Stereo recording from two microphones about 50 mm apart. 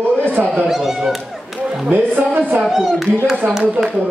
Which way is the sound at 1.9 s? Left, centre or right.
Right.